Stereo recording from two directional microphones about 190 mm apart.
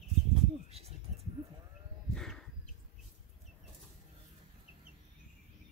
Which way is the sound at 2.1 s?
5° left (ahead or behind).